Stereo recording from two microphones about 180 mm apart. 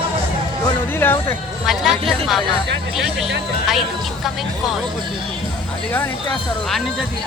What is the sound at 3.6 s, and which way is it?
Speech, centre (ahead or behind).